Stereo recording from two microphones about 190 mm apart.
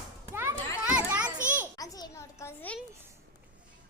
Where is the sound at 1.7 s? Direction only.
20° left (ahead or behind).